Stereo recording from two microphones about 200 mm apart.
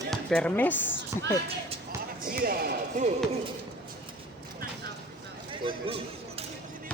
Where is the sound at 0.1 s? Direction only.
5° left (ahead or behind).